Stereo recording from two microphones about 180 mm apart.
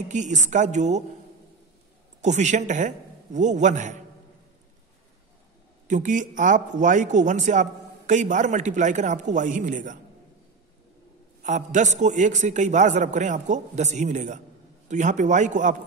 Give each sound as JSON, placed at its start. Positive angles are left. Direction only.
{"t": 0.1, "sound": "a woman's voice", "side_deg": -40}
{"t": 2.2, "sound": "a man's voice", "side_deg": -40}
{"t": 5.9, "sound": "a man's voice", "side_deg": -45}
{"t": 11.4, "sound": "a man's voice", "side_deg": -45}